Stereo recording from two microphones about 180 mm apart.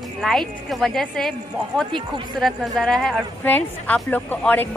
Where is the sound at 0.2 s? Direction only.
Centre (ahead or behind).